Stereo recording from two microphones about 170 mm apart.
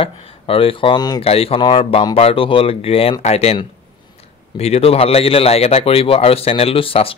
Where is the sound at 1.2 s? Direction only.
35° left (ahead or behind).